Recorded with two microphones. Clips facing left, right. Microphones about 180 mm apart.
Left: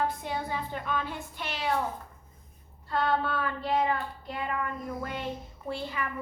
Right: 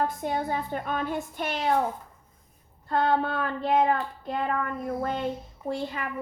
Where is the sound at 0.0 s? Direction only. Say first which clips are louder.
Right 3 dB; 45° right (ahead or behind).